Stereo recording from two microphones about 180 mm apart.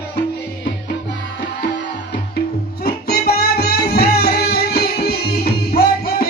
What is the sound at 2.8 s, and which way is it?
Music, 60° left (ahead or behind).